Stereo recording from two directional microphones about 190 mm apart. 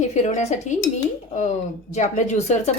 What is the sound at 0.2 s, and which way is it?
Speech, 40° left (ahead or behind).